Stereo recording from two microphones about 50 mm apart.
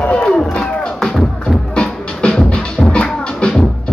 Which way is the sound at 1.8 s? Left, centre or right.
Centre.